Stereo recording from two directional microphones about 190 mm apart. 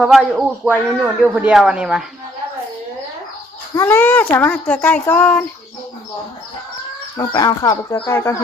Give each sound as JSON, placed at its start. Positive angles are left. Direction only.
{"t": 0.0, "sound": "speech", "side_deg": 0}
{"t": 3.8, "sound": "a child's voice", "side_deg": 10}
{"t": 7.2, "sound": "a child's voice", "side_deg": 20}